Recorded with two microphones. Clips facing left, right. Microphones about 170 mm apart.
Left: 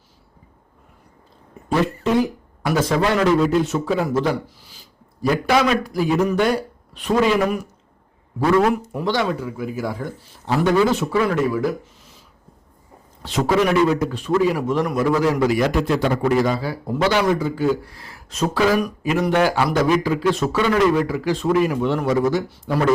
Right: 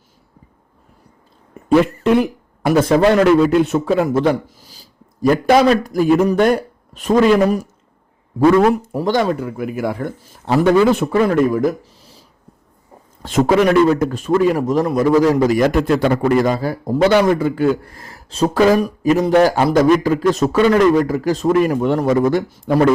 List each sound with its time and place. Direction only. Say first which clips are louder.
2.0 s speech: right 4 dB; 60° right (ahead or behind)
2.6 s speech: right 6 dB; 50° right (ahead or behind)
4.6 s a man's voice: right 3 dB; 40° right (ahead or behind)
8.7 s speech: right 4 dB; 35° right (ahead or behind)
13.2 s speech: right 5 dB; 45° right (ahead or behind)
18.5 s speech: right 5 dB; 45° right (ahead or behind)